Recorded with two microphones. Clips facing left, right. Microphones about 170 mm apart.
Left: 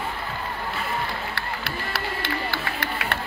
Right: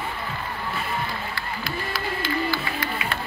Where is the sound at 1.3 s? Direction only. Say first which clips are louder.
Right 1 dB; 70° left (ahead or behind).